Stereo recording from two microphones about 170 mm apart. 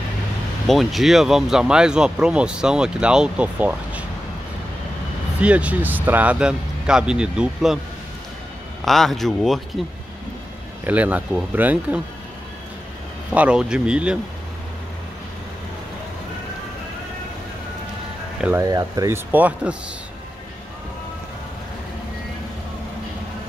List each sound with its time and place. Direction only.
0.7 s speech: centre (ahead or behind)
5.4 s speech: 5° right (ahead or behind)
8.8 s speech: centre (ahead or behind)
10.8 s speech: 10° right (ahead or behind)
13.3 s speech: 5° right (ahead or behind)
18.6 s speech: 20° right (ahead or behind)